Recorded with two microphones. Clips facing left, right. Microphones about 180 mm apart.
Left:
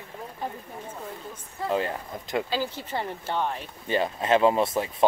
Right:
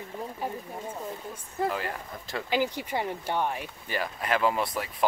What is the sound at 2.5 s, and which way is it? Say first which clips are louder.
Speech: right 2 dB; 15° right (ahead or behind).